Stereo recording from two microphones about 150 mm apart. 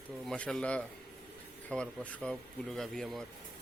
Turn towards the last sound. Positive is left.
turn(degrees=0)  # may be behind; listen again after turning